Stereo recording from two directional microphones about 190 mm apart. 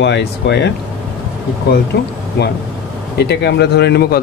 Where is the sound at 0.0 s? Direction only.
65° left (ahead or behind).